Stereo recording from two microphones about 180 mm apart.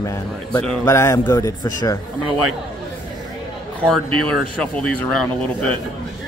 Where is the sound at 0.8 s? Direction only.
15° left (ahead or behind).